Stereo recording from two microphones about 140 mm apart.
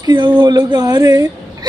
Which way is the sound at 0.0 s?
30° right (ahead or behind).